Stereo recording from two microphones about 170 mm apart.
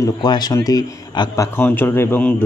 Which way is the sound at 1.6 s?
10° left (ahead or behind).